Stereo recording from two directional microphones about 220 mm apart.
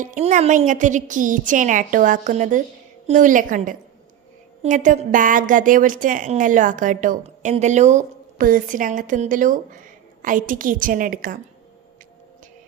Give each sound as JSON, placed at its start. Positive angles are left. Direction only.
{"t": 0.0, "sound": "a woman's voice", "side_deg": -35}